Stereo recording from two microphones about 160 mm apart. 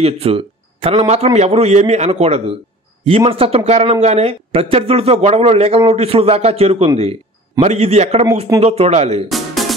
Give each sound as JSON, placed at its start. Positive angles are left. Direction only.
{"t": 0.0, "sound": "speech", "side_deg": -35}
{"t": 9.3, "sound": "music", "side_deg": 0}